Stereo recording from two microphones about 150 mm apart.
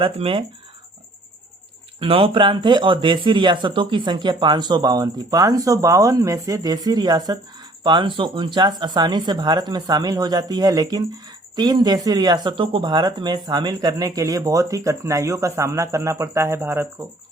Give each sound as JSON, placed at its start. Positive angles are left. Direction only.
{"t": 0.0, "sound": "speech", "side_deg": -35}
{"t": 2.0, "sound": "speech", "side_deg": -35}